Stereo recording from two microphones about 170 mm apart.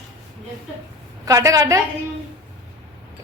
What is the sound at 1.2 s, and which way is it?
Speech, 20° right (ahead or behind).